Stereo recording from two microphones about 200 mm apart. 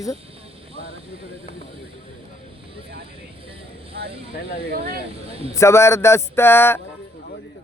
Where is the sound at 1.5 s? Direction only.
25° right (ahead or behind).